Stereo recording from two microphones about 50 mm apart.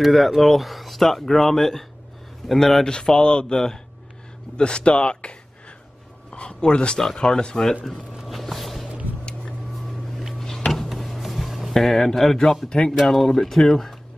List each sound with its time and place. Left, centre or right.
0.0 s a man's voice: centre; by 5.3 s left
6.3 s a man's voice: centre
8.3 s a sound: centre
10.7 s a sound: centre
11.1 s music: centre
11.7 s a man's voice: centre
12.6 s a man's voice: centre
12.9 s a man's voice: centre